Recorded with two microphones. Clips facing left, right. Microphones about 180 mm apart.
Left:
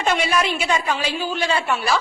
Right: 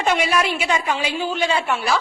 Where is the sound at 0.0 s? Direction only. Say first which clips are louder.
Right 1 dB; 10° right (ahead or behind).